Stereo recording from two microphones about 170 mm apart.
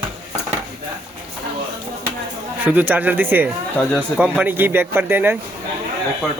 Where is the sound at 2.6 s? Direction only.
10° right (ahead or behind).